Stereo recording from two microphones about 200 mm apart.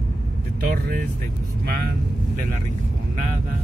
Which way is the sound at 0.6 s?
50° right (ahead or behind).